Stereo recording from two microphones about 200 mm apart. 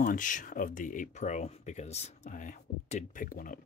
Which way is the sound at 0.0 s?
40° left (ahead or behind).